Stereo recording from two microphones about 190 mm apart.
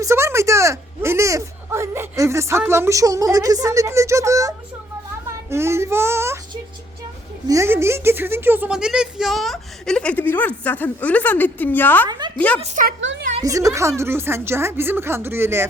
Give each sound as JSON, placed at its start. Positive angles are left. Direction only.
{"t": 0.0, "sound": "a woman's voice", "side_deg": -15}
{"t": 12.0, "sound": "a woman's voice", "side_deg": -20}
{"t": 12.6, "sound": "a woman's voice", "side_deg": -40}
{"t": 13.4, "sound": "speech", "side_deg": -15}